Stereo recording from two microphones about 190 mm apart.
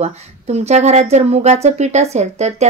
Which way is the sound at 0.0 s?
35° right (ahead or behind).